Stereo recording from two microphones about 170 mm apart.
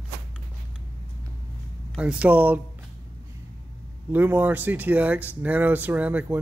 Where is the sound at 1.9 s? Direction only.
5° right (ahead or behind).